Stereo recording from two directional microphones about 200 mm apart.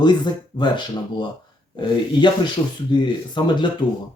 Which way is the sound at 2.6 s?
25° left (ahead or behind).